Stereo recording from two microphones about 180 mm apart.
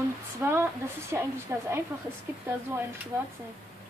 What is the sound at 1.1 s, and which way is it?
Speech, 15° right (ahead or behind).